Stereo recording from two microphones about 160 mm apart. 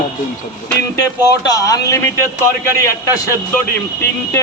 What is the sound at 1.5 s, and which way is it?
A man's voice, 25° left (ahead or behind).